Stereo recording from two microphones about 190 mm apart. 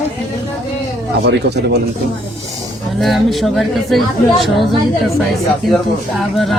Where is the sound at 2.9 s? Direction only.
Centre (ahead or behind).